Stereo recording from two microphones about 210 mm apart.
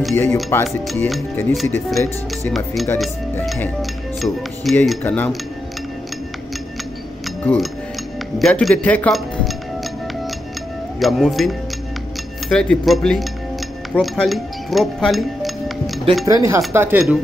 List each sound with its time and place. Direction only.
0.1 s speech: 10° left (ahead or behind)
7.4 s speech: centre (ahead or behind)
11.0 s speech: centre (ahead or behind)
13.9 s music: centre (ahead or behind)
16.3 s speech: 15° right (ahead or behind)